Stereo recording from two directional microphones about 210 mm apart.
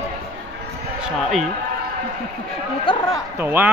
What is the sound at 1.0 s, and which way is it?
Basketball bounce, centre (ahead or behind).